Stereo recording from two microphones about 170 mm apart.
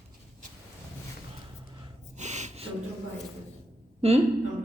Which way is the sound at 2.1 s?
45° right (ahead or behind).